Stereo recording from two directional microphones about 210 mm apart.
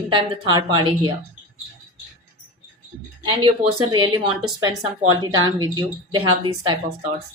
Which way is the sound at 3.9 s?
20° right (ahead or behind).